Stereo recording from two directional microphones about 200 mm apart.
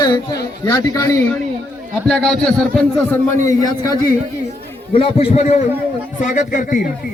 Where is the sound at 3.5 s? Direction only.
15° left (ahead or behind).